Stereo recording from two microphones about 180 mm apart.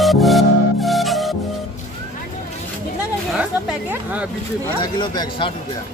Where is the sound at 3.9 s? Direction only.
10° right (ahead or behind).